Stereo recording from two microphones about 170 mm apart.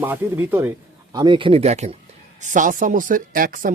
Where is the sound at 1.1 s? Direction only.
25° right (ahead or behind).